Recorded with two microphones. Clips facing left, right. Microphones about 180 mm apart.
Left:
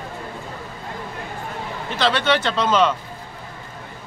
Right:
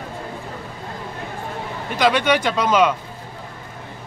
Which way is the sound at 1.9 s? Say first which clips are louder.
Right 2 dB; 15° right (ahead or behind).